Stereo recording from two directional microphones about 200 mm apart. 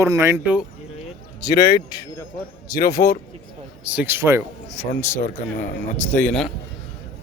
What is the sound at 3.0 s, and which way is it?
Speech, 45° left (ahead or behind).